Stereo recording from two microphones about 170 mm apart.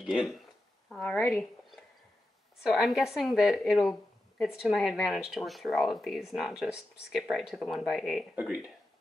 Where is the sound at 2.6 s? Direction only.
Centre (ahead or behind).